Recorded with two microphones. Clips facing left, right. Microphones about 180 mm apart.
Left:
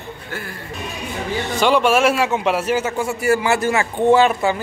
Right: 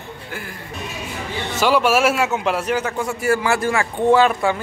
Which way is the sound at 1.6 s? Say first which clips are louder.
Left 1 dB; 5° right (ahead or behind).